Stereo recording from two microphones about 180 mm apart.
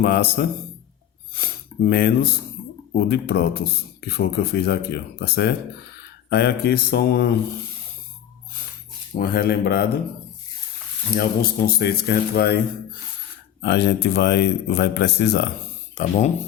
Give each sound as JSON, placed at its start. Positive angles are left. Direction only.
{"t": 0.0, "sound": "speech", "side_deg": 60}
{"t": 1.9, "sound": "speech", "side_deg": 60}
{"t": 9.1, "sound": "speech", "side_deg": 55}
{"t": 11.1, "sound": "speech", "side_deg": 55}
{"t": 13.6, "sound": "speech", "side_deg": 70}
{"t": 16.0, "sound": "speech", "side_deg": 40}